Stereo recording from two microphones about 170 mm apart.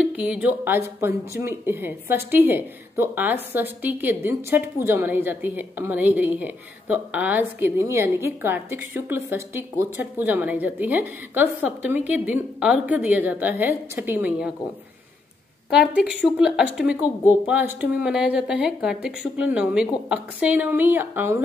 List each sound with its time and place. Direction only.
0.1 s a woman's voice: 5° right (ahead or behind)
15.7 s a woman's voice: 5° right (ahead or behind)